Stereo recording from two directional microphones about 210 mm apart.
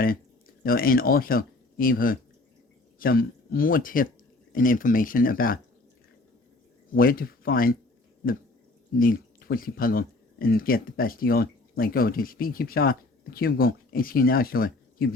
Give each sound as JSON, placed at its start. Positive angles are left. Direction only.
{"t": 0.6, "sound": "speech", "side_deg": 45}
{"t": 6.9, "sound": "speech", "side_deg": 45}
{"t": 9.0, "sound": "speech", "side_deg": 45}